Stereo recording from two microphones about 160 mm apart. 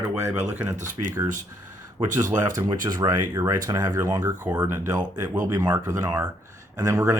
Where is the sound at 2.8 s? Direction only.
25° right (ahead or behind).